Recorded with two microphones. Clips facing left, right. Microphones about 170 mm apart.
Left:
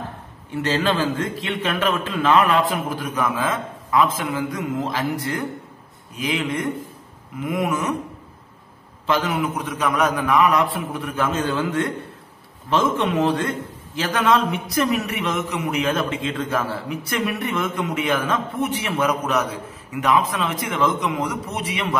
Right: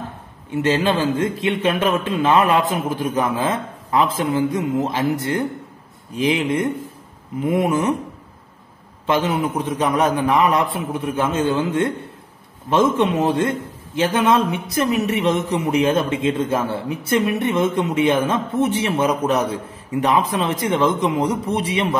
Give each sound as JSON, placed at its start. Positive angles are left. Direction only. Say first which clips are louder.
{"t": 0.6, "sound": "a man's voice", "louder": "right 3 dB", "side_deg": -20}
{"t": 9.0, "sound": "a man's voice", "louder": "right 2 dB", "side_deg": -25}